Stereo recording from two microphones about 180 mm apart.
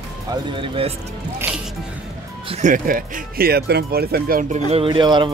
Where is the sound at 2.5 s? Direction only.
45° right (ahead or behind).